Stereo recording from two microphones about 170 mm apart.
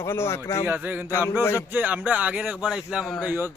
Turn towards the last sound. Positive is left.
turn(degrees=0)  # may be behind; listen again after turning